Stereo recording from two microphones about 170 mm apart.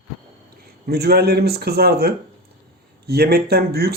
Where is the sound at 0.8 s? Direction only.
70° right (ahead or behind).